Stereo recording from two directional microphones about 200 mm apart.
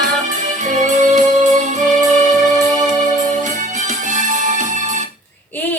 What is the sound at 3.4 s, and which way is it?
Music, 40° right (ahead or behind).